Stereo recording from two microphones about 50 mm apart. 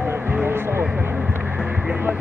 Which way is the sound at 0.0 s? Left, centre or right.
Right.